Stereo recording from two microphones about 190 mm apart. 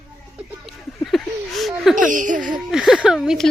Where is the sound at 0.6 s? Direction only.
Centre (ahead or behind).